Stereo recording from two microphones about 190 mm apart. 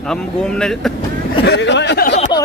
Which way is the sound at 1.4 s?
65° left (ahead or behind).